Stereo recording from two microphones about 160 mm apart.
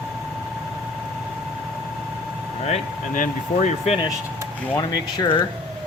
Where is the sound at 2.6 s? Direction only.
50° left (ahead or behind).